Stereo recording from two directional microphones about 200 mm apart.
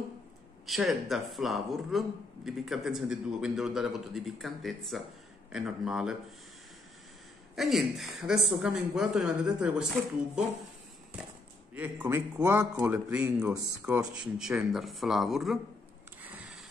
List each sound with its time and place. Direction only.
0.7 s a man's voice: centre (ahead or behind)
7.5 s a man's voice: centre (ahead or behind)
11.7 s a man's voice: 10° right (ahead or behind)